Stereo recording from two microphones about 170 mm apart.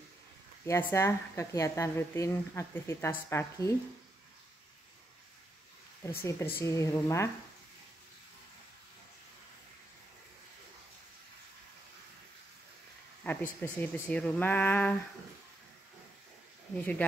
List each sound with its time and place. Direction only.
0.8 s a woman's voice: 15° left (ahead or behind)
6.0 s a woman's voice: 15° left (ahead or behind)
13.2 s a woman's voice: 10° left (ahead or behind)